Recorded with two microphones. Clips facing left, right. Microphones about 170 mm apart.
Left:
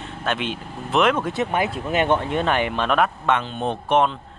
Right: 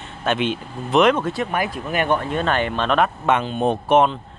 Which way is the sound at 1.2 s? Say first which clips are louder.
Even; 20° left (ahead or behind).